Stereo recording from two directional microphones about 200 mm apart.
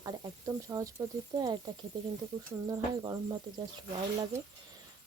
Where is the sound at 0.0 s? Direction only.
15° right (ahead or behind).